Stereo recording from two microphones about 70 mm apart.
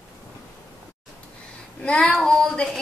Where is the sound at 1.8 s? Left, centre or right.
Centre.